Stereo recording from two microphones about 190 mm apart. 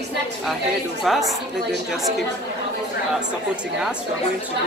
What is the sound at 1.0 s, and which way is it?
A woman's voice, centre (ahead or behind).